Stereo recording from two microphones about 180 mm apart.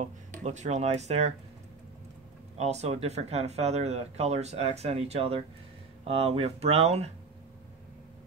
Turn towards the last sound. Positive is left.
turn(degrees=-35)  # may be behind; listen again after turning